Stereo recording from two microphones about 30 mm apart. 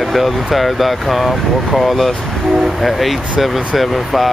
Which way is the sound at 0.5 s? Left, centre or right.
Centre.